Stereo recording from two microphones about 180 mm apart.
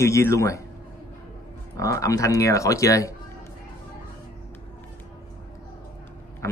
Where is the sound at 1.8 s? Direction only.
20° left (ahead or behind).